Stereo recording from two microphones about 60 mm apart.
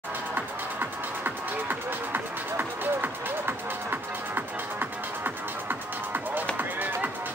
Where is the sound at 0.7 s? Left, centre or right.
Right.